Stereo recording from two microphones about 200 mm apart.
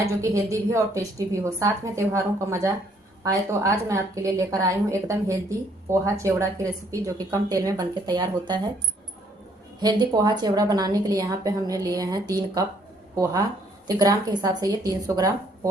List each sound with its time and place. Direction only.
0.0 s a woman's voice: 15° right (ahead or behind)
9.8 s a woman's voice: 20° right (ahead or behind)
13.8 s a woman's voice: 20° right (ahead or behind)